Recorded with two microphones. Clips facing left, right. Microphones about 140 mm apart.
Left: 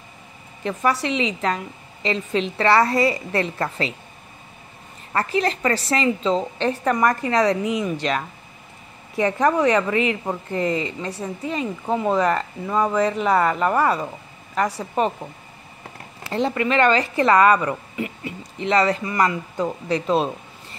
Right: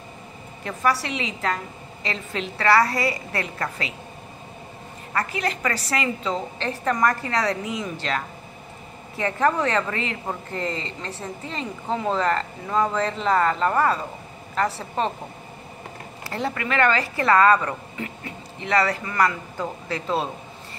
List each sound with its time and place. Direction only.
0.7 s a woman's voice: 20° left (ahead or behind)
5.1 s a woman's voice: 30° left (ahead or behind); by 15.0 s 15° left (ahead or behind)
16.3 s a woman's voice: 20° left (ahead or behind)
18.6 s a woman's voice: 20° left (ahead or behind)